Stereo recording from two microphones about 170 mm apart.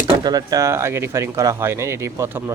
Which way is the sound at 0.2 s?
25° right (ahead or behind).